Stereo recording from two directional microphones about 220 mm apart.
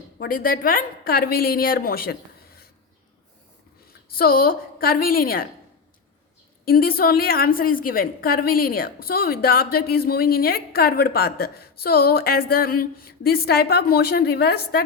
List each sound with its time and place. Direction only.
0.2 s a woman's voice: 40° left (ahead or behind)
4.1 s a woman's voice: 40° left (ahead or behind)
6.7 s a woman's voice: 40° left (ahead or behind)